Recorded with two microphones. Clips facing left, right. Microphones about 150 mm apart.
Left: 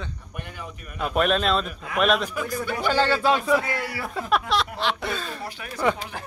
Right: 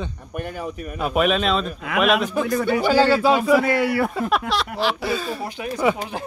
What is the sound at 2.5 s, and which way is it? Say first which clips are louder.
Speech: right 11 dB; 65° right (ahead or behind).